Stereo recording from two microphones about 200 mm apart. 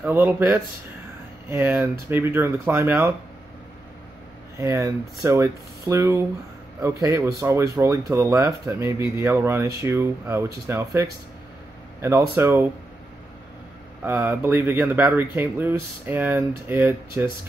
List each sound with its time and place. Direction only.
0.0 s speech: 10° right (ahead or behind)
4.6 s speech: 15° right (ahead or behind)
14.0 s speech: 10° right (ahead or behind)